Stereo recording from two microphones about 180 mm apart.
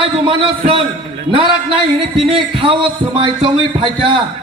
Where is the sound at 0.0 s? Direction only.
30° right (ahead or behind).